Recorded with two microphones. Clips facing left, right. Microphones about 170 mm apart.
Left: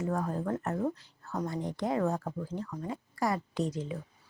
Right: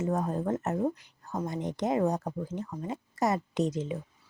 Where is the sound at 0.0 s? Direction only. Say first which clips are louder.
Right 3 dB; 20° right (ahead or behind).